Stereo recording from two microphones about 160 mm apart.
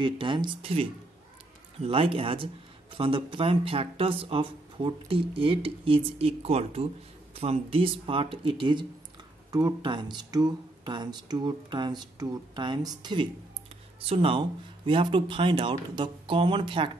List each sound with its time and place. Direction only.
0.0 s speech: 30° right (ahead or behind)